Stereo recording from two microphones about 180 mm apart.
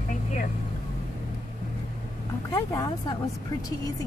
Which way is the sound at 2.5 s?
20° left (ahead or behind).